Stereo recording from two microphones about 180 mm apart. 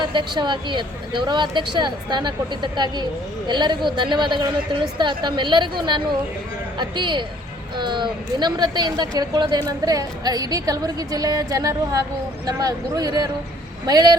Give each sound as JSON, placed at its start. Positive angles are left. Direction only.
{"t": 0.0, "sound": "a woman's voice", "side_deg": -25}